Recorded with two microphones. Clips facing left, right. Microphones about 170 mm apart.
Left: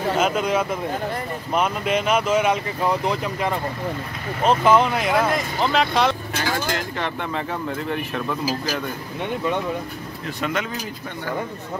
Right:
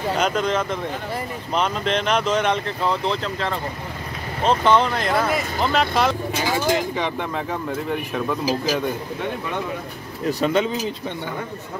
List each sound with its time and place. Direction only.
0.1 s speech: 5° left (ahead or behind)
6.3 s speech: 10° right (ahead or behind)
10.4 s speech: 30° right (ahead or behind)